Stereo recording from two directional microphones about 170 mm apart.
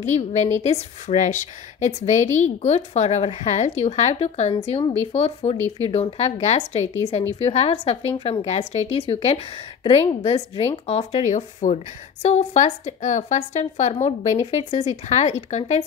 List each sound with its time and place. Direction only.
0.0 s a woman's voice: 40° left (ahead or behind)